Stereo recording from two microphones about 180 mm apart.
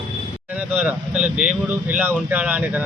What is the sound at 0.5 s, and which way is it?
A man's voice, 10° right (ahead or behind).